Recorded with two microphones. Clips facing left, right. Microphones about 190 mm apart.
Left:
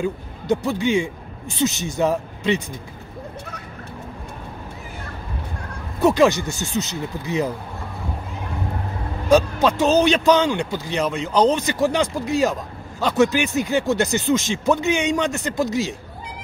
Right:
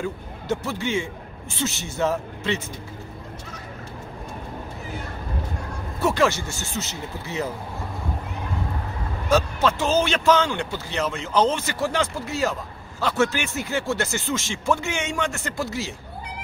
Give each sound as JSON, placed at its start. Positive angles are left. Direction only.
{"t": 0.0, "sound": "speech", "side_deg": 15}
{"t": 5.9, "sound": "speech", "side_deg": 15}
{"t": 9.3, "sound": "speech", "side_deg": 15}